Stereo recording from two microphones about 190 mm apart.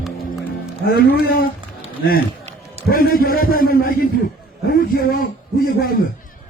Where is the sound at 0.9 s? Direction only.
55° left (ahead or behind).